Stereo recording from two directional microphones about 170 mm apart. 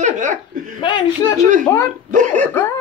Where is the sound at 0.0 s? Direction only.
45° right (ahead or behind).